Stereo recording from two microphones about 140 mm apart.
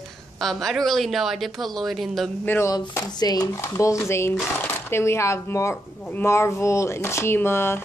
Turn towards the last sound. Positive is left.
turn(degrees=15)  # may be behind; listen again after turning